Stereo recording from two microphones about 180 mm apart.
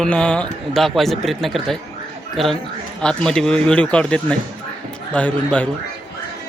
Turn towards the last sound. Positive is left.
turn(degrees=5)  # may be behind; listen again after turning